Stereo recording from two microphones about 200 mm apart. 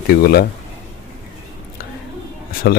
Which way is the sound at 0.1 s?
50° left (ahead or behind).